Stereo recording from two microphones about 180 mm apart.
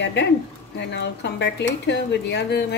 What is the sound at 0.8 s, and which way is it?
Speech, 75° left (ahead or behind).